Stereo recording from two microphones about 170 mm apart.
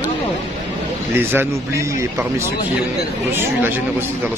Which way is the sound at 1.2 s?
15° right (ahead or behind).